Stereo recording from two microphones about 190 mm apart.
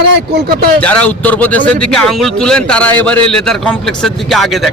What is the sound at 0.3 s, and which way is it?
Speech, 55° right (ahead or behind).